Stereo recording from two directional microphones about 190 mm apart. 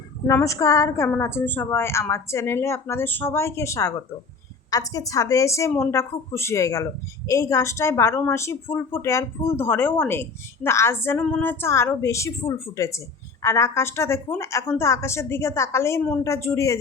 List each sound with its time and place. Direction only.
0.3 s a woman's voice: 15° left (ahead or behind)